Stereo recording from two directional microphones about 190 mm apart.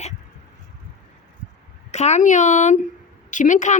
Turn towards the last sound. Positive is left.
turn(degrees=40)  # may be behind; listen again after turning